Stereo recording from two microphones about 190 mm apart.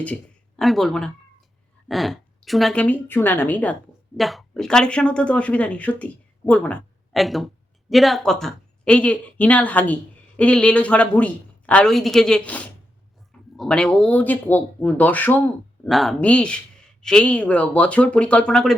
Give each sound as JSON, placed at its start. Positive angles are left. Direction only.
{"t": 0.0, "sound": "speech", "side_deg": 5}